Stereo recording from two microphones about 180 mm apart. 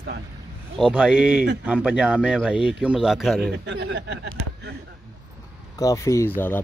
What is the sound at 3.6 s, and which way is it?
Speech, 75° right (ahead or behind).